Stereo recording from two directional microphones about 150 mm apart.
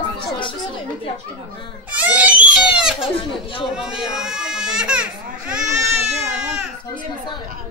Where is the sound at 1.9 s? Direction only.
10° right (ahead or behind).